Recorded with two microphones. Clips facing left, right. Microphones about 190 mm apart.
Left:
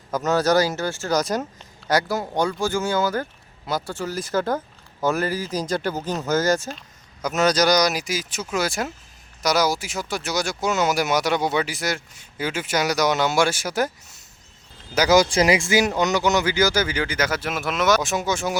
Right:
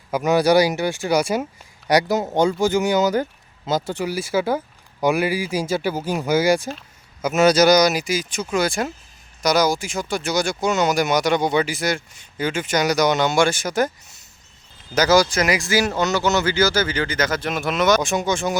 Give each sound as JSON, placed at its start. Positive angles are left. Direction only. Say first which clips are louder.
{"t": 0.1, "sound": "speech", "louder": "right 3 dB", "side_deg": -15}
{"t": 14.9, "sound": "speech", "louder": "right 1 dB", "side_deg": 15}
{"t": 15.3, "sound": "speech", "louder": "left 2 dB", "side_deg": 30}